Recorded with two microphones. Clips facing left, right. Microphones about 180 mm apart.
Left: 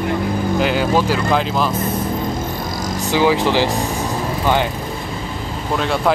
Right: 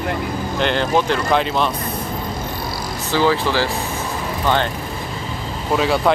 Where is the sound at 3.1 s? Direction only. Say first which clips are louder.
Left 2 dB; 15° left (ahead or behind).